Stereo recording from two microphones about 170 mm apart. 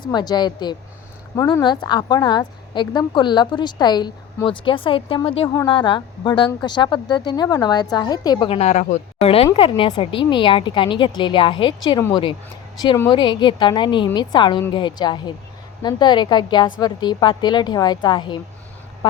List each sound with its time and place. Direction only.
0.0 s speech: 25° left (ahead or behind)